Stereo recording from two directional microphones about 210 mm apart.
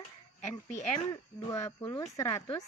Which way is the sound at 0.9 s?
15° left (ahead or behind).